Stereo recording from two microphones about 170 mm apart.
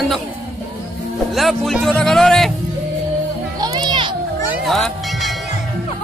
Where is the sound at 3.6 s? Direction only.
25° right (ahead or behind).